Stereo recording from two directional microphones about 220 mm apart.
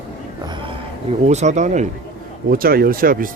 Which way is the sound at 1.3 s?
30° right (ahead or behind).